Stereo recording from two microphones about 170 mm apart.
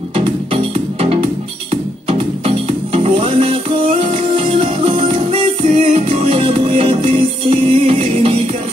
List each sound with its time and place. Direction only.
1.7 s music: 35° right (ahead or behind)